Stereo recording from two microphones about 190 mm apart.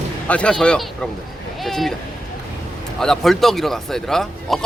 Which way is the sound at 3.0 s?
Centre (ahead or behind).